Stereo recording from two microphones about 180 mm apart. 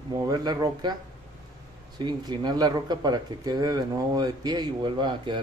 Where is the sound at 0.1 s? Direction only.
20° right (ahead or behind).